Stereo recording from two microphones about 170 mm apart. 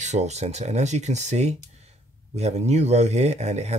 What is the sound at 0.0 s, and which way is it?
Speech, 45° right (ahead or behind).